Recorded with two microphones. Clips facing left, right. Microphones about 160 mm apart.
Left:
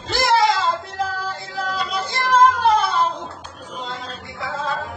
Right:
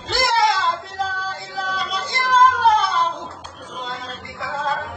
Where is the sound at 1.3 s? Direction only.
Centre (ahead or behind).